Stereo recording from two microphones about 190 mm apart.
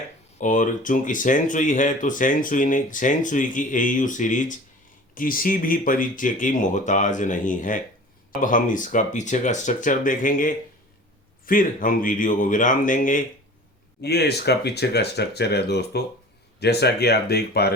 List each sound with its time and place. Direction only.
0.3 s speech: 45° left (ahead or behind)
14.0 s speech: 60° left (ahead or behind)